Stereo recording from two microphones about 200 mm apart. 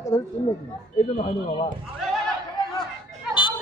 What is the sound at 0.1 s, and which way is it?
Speech, 15° left (ahead or behind).